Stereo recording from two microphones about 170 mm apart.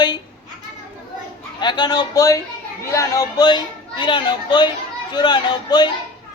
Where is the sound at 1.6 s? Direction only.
25° left (ahead or behind).